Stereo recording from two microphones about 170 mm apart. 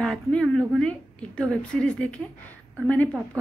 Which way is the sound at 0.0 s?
5° left (ahead or behind).